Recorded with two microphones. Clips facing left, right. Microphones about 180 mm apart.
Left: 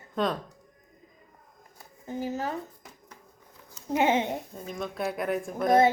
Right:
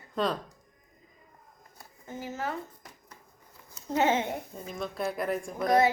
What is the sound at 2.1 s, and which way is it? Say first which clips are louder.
Speech: left 4 dB; 15° left (ahead or behind).